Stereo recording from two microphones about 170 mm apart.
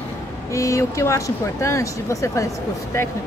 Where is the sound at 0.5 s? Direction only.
20° left (ahead or behind).